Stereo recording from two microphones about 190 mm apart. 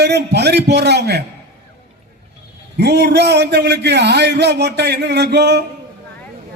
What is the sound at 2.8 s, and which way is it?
A man's voice, 60° right (ahead or behind).